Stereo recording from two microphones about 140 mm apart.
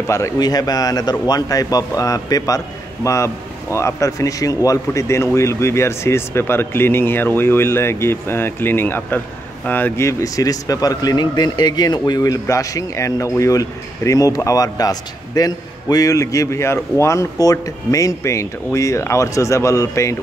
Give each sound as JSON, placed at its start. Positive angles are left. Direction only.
{"t": 0.0, "sound": "speech", "side_deg": 20}